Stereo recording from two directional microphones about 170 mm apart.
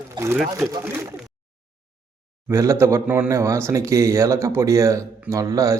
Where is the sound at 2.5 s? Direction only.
15° right (ahead or behind).